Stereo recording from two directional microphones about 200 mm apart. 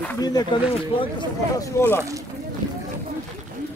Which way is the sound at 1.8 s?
15° left (ahead or behind).